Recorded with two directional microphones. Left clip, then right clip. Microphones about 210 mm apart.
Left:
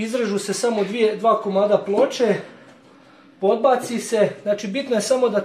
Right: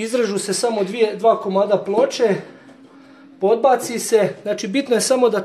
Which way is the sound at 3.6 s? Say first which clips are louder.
Right 2 dB; 55° right (ahead or behind).